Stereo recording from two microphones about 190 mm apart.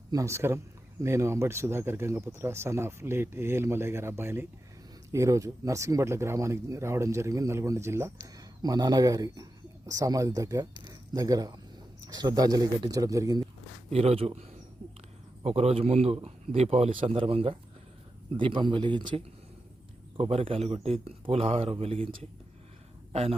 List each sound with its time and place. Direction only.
0.1 s speech: 15° right (ahead or behind)
13.9 s a man's voice: 30° right (ahead or behind)
15.4 s a man's voice: 30° right (ahead or behind)